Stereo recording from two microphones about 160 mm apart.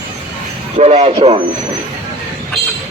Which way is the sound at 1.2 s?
30° right (ahead or behind).